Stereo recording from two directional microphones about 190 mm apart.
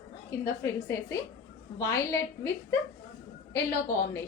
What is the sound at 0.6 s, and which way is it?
A woman's voice, 15° left (ahead or behind).